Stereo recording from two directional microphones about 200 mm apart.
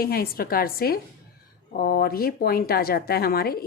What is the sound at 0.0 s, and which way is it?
A woman's voice, 50° left (ahead or behind).